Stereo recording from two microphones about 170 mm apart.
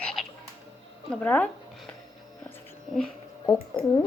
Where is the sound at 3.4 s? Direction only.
25° left (ahead or behind).